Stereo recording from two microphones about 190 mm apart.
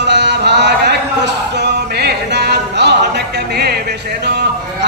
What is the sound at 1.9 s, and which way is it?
Music, 60° right (ahead or behind).